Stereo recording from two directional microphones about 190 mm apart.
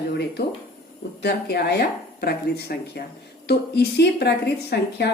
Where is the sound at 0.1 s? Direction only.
60° left (ahead or behind).